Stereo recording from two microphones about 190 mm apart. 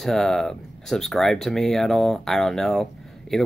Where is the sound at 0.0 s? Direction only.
Centre (ahead or behind).